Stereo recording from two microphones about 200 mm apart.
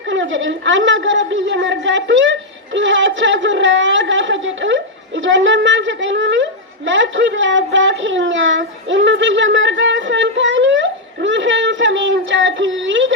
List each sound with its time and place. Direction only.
0.1 s a woman's voice: 65° right (ahead or behind)